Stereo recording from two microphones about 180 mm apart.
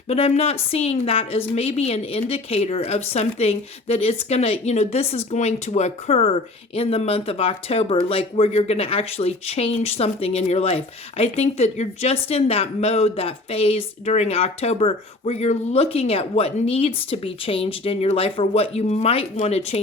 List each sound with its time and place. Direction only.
0.1 s a woman's voice: 35° left (ahead or behind)